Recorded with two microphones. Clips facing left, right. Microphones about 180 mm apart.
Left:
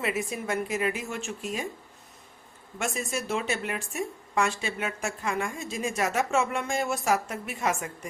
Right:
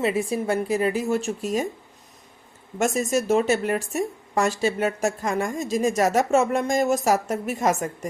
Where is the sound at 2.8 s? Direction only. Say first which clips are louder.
Right 9 dB; 40° right (ahead or behind).